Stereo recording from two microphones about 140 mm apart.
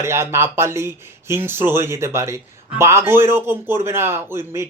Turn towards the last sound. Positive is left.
turn(degrees=-20)  # may be behind; listen again after turning